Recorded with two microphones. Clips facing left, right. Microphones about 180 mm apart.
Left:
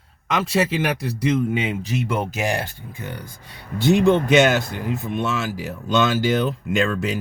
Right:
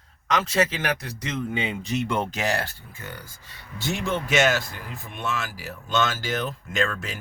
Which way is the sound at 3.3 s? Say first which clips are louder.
Left 9 dB; 60° left (ahead or behind).